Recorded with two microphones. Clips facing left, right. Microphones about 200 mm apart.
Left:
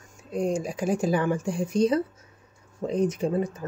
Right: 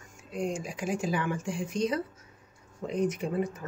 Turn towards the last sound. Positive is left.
turn(degrees=30)  # may be behind; listen again after turning